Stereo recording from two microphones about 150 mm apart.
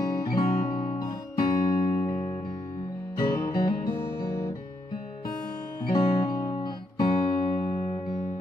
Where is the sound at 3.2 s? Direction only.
25° left (ahead or behind).